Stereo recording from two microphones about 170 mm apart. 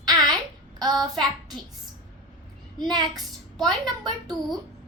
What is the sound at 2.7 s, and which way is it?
Speech, 25° right (ahead or behind).